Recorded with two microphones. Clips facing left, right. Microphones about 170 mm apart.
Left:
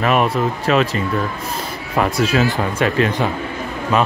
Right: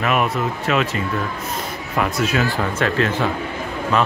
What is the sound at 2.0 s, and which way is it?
Speech, 35° left (ahead or behind).